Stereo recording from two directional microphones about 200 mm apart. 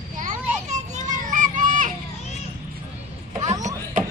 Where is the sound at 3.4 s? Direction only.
35° right (ahead or behind).